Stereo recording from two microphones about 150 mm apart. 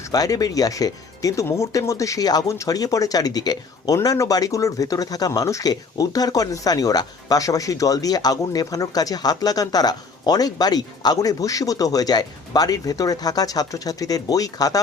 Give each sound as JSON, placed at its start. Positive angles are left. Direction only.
{"t": 0.1, "sound": "speech", "side_deg": 25}